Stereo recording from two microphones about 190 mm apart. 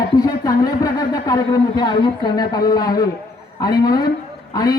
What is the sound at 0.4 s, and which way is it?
A man's voice, 20° left (ahead or behind).